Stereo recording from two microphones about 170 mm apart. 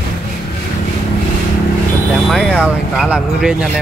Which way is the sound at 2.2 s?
Centre (ahead or behind).